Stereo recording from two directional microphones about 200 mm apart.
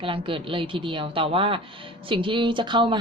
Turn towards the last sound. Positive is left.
turn(degrees=-25)  # may be behind; listen again after turning